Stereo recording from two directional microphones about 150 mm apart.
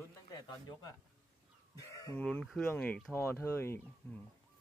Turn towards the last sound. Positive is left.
turn(degrees=15)  # may be behind; listen again after turning